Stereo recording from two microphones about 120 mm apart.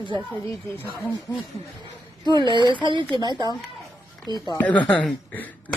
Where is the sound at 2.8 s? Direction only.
45° right (ahead or behind).